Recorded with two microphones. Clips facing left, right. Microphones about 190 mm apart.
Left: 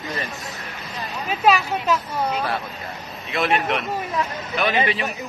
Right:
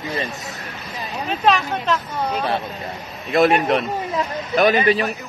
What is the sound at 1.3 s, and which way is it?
Speech, 10° left (ahead or behind).